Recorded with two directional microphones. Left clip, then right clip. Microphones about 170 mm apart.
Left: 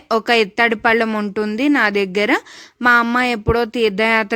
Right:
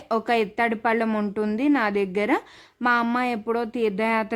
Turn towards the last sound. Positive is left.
turn(degrees=25)  # may be behind; listen again after turning